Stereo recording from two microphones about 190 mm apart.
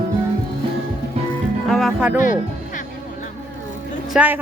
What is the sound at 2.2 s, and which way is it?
Music, 45° left (ahead or behind).